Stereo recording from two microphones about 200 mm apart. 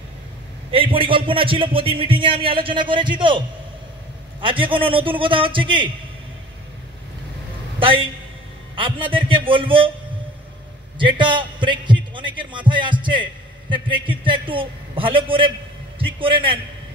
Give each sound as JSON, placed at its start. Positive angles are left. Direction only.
{"t": 0.7, "sound": "a man's voice", "side_deg": -25}
{"t": 7.8, "sound": "a man's voice", "side_deg": -25}
{"t": 11.0, "sound": "a man's voice", "side_deg": -25}